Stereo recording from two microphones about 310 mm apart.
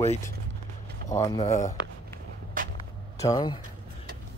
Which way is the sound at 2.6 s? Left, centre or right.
Right.